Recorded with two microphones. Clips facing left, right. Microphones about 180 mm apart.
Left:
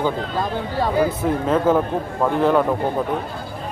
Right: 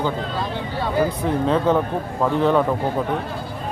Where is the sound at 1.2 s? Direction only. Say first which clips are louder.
Left 1 dB; 5° left (ahead or behind).